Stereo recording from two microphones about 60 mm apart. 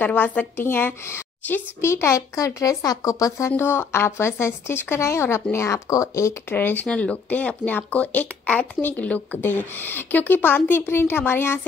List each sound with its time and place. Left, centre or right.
0.0 s a woman's voice: left
3.5 s speech: left
5.9 s speech: left
6.5 s a woman's voice: left
6.9 s speech: centre
7.2 s a woman's voice: left